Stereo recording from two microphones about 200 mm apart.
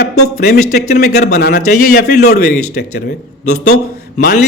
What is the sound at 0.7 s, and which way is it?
A man's voice, 55° left (ahead or behind).